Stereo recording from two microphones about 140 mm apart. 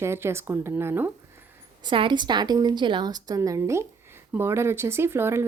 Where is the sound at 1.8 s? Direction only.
35° right (ahead or behind).